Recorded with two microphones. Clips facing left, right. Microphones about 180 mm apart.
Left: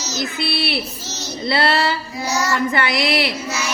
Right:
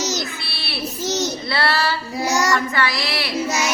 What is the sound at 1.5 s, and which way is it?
Child singing, 20° left (ahead or behind).